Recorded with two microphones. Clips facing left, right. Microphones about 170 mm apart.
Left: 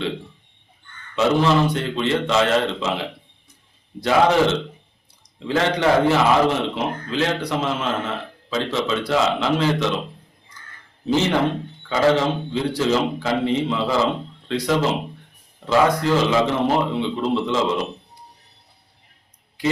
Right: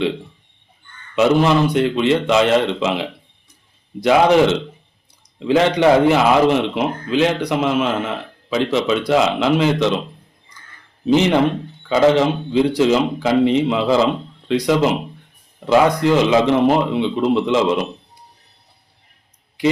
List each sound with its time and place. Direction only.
1.1 s a man's voice: 15° right (ahead or behind)
11.0 s a man's voice: 15° right (ahead or behind)